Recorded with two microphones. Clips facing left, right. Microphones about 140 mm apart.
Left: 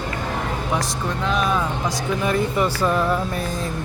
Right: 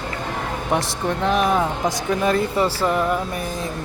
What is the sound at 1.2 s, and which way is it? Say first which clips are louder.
Speech: right 3 dB; 55° right (ahead or behind).